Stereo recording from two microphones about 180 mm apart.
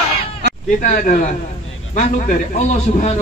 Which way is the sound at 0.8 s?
45° left (ahead or behind).